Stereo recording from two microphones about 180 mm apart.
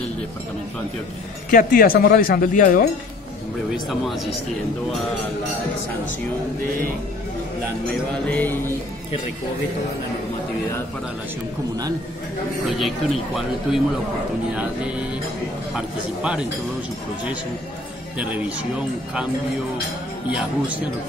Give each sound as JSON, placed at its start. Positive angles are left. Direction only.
{"t": 1.5, "sound": "speech", "side_deg": 50}
{"t": 4.0, "sound": "speech", "side_deg": 0}
{"t": 7.9, "sound": "music", "side_deg": 10}
{"t": 12.6, "sound": "speech", "side_deg": 0}
{"t": 18.1, "sound": "speech", "side_deg": -10}
{"t": 20.2, "sound": "speech", "side_deg": -5}